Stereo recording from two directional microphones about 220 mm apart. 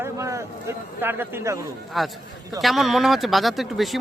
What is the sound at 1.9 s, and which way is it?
Speech, centre (ahead or behind).